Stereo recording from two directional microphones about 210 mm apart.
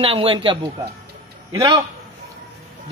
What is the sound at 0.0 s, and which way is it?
A man's voice, 25° right (ahead or behind).